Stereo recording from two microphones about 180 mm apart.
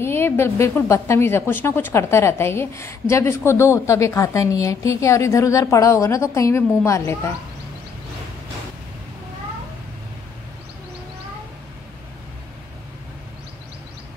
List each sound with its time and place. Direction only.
0.0 s a woman's voice: 15° left (ahead or behind)